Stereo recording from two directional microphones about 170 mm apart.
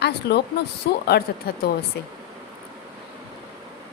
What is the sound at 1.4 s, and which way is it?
Speech, 65° left (ahead or behind).